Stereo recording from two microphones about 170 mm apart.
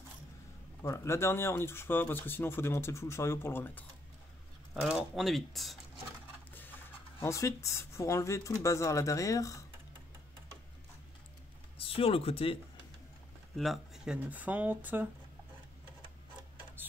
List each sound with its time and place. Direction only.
0.8 s speech: 15° left (ahead or behind)
4.7 s speech: centre (ahead or behind)
7.2 s speech: 15° left (ahead or behind)
11.8 s speech: 35° left (ahead or behind)
13.6 s speech: centre (ahead or behind)